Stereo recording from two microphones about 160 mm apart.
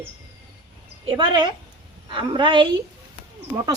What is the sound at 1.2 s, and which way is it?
A woman's voice, 25° right (ahead or behind).